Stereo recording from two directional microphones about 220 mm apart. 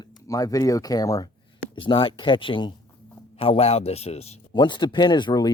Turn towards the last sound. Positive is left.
turn(degrees=20)  # may be behind; listen again after turning